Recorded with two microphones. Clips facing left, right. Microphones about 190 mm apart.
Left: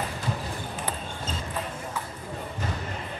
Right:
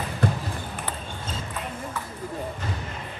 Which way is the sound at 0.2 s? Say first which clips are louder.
Right 9 dB; 60° right (ahead or behind).